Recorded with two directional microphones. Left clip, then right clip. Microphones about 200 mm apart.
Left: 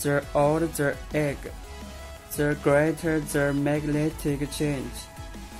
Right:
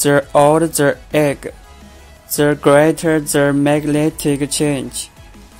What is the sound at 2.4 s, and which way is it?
Speech, 40° right (ahead or behind).